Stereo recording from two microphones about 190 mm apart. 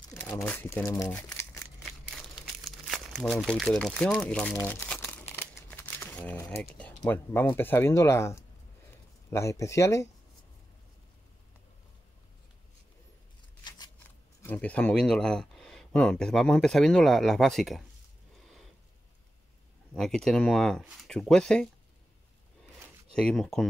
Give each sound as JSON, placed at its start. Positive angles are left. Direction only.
{"t": 0.1, "sound": "speech", "side_deg": 5}
{"t": 1.3, "sound": "crumpling", "side_deg": 15}
{"t": 2.0, "sound": "crumpling", "side_deg": 0}
{"t": 7.0, "sound": "speech", "side_deg": 10}
{"t": 14.4, "sound": "speech", "side_deg": 10}
{"t": 19.9, "sound": "speech", "side_deg": 0}
{"t": 23.1, "sound": "speech", "side_deg": 5}